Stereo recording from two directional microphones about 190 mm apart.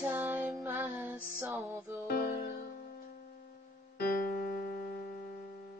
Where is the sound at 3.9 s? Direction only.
55° left (ahead or behind).